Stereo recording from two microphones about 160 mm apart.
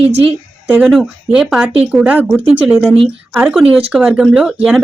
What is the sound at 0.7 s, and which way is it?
A woman's voice, 5° right (ahead or behind).